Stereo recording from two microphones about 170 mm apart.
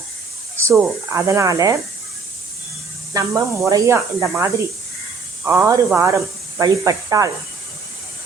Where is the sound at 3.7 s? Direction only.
20° right (ahead or behind).